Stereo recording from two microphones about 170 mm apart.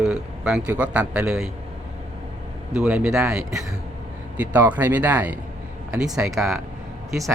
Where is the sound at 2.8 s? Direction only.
5° right (ahead or behind).